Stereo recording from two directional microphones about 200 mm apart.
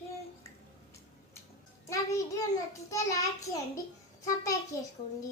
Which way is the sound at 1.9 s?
15° left (ahead or behind).